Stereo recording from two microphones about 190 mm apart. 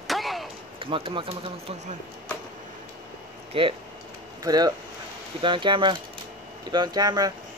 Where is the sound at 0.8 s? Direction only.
30° right (ahead or behind).